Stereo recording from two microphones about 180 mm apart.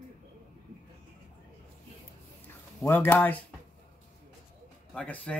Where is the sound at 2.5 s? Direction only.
10° left (ahead or behind).